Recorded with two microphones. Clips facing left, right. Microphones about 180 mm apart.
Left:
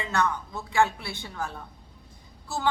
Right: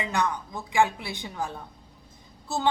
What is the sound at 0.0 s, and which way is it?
A man's voice, 15° right (ahead or behind).